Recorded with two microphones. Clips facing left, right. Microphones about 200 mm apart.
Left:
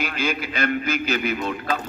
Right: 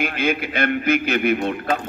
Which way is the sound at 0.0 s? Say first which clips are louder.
Right 4 dB; 55° right (ahead or behind).